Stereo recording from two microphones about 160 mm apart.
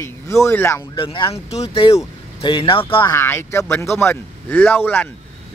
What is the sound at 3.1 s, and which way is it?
Speech, 15° left (ahead or behind).